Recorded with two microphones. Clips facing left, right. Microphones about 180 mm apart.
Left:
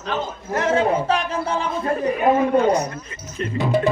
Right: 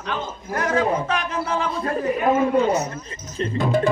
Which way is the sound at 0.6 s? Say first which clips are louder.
Left 2 dB; 25° left (ahead or behind).